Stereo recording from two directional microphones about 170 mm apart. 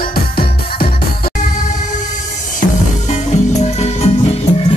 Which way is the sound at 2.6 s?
45° left (ahead or behind).